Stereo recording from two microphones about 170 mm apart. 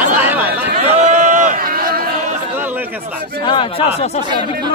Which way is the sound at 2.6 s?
10° right (ahead or behind).